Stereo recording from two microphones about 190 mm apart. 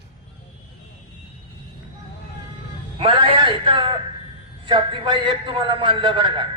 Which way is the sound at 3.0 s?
25° right (ahead or behind).